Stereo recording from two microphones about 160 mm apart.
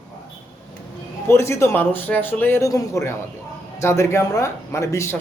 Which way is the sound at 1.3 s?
15° left (ahead or behind).